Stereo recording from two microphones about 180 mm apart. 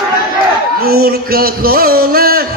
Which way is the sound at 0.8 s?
55° right (ahead or behind).